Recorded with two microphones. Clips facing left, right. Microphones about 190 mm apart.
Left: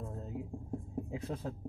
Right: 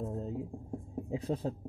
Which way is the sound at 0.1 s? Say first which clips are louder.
Right 5 dB; 30° right (ahead or behind).